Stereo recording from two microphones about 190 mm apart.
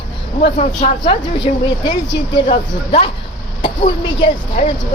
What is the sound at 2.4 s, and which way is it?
Speech, 30° left (ahead or behind).